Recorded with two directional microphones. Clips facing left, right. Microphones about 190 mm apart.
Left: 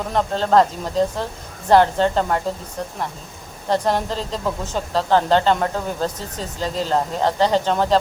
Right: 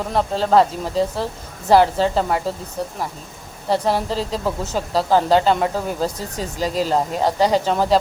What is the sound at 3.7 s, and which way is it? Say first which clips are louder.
Speech: right 1 dB; 5° right (ahead or behind).